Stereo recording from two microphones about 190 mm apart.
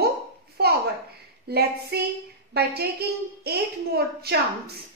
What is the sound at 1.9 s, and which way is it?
A woman's voice, 60° right (ahead or behind).